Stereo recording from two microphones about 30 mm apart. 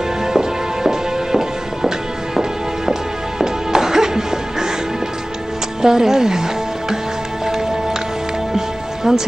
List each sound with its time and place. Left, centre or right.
0.2 s music: centre
5.8 s speech: centre
8.5 s music: centre